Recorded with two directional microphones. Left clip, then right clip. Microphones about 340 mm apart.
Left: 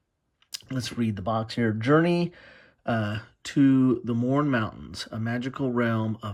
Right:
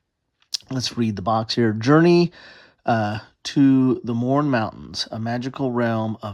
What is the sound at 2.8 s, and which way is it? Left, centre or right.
Speech, centre.